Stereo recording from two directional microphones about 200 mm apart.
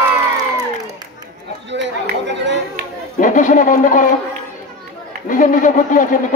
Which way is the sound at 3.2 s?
40° left (ahead or behind).